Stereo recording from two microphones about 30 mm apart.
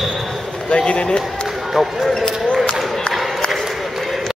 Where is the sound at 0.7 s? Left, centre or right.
Left.